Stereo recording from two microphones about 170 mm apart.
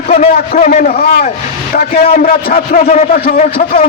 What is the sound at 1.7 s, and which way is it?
A man's voice, 60° left (ahead or behind).